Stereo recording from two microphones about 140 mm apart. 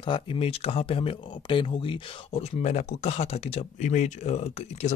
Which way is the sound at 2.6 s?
55° left (ahead or behind).